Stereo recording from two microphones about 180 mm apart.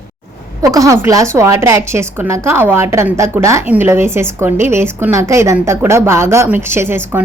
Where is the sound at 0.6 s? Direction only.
20° right (ahead or behind).